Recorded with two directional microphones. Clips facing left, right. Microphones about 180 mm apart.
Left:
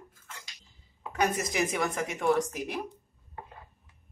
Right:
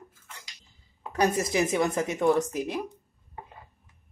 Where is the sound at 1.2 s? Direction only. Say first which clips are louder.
Right 4 dB; 30° right (ahead or behind).